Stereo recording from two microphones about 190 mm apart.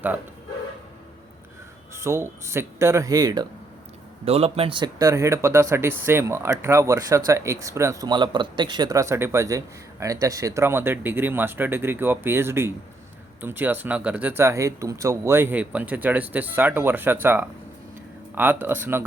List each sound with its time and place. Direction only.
1.9 s speech: 15° right (ahead or behind)
4.3 s speech: 30° right (ahead or behind); by 19.0 s 10° right (ahead or behind)